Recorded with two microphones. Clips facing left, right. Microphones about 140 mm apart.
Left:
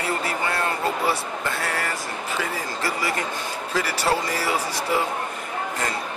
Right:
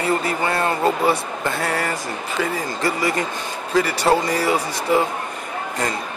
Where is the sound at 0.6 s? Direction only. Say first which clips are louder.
Right 5 dB; 20° right (ahead or behind).